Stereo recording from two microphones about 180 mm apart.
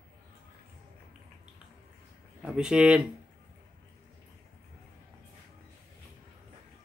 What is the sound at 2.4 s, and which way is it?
Speech, 5° right (ahead or behind).